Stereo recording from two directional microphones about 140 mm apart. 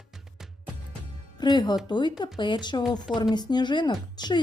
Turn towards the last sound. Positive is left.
turn(degrees=30)  # may be behind; listen again after turning